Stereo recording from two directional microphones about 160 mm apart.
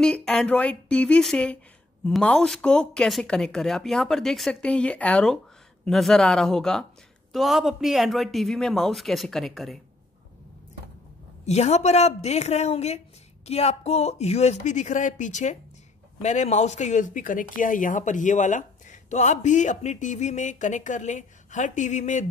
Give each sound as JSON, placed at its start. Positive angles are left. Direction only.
{"t": 0.0, "sound": "speech", "side_deg": 5}
{"t": 11.4, "sound": "speech", "side_deg": 45}